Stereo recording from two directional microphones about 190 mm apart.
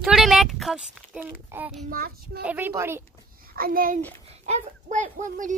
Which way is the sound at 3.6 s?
50° right (ahead or behind).